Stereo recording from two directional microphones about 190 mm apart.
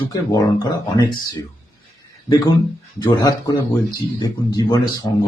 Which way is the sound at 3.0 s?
20° left (ahead or behind).